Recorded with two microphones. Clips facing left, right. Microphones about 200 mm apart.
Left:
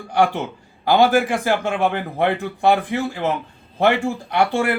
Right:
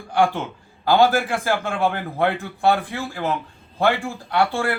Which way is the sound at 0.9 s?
15° left (ahead or behind).